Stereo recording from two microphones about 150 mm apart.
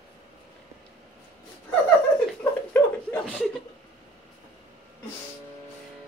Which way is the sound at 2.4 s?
15° left (ahead or behind).